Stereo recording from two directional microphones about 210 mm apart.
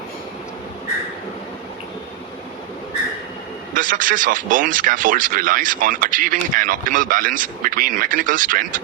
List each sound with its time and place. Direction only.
3.8 s speech: 40° right (ahead or behind)